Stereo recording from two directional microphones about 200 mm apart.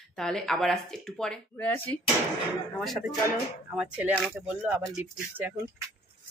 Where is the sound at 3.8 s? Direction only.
5° right (ahead or behind).